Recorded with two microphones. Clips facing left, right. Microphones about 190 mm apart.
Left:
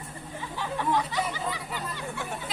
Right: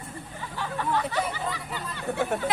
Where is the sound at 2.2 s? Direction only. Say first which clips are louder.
Right 9 dB; 65° right (ahead or behind).